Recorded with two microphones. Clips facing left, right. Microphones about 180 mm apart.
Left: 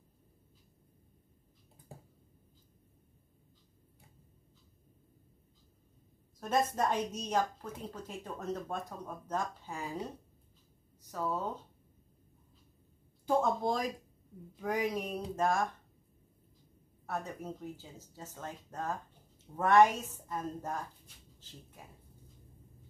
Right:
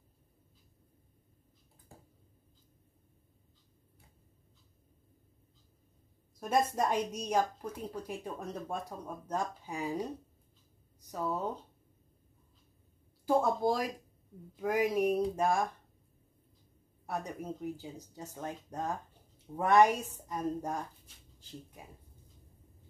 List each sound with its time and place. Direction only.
6.4 s speech: 10° right (ahead or behind)
11.1 s speech: 15° right (ahead or behind)
13.2 s a woman's voice: 5° right (ahead or behind)
17.0 s speech: 15° right (ahead or behind)